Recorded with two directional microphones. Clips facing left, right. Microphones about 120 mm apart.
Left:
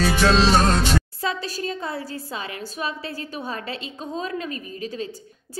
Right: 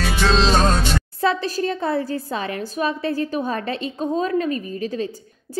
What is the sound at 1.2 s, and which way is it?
A woman's voice, 45° right (ahead or behind).